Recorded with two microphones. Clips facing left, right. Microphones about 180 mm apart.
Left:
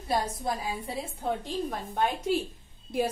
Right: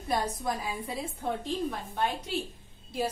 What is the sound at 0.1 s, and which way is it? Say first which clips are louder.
Speech: left 1 dB; 30° left (ahead or behind).